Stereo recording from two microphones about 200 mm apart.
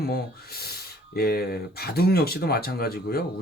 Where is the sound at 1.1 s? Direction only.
50° left (ahead or behind).